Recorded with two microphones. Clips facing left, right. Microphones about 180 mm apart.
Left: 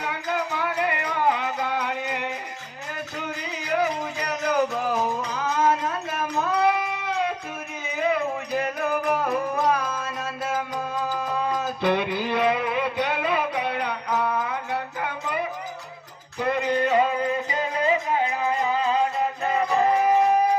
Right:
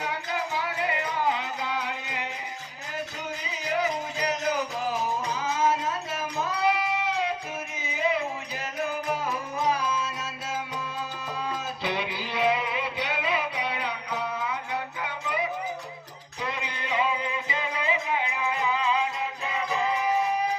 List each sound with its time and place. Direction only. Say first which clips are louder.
0.0 s music: left 3 dB; 55° left (ahead or behind)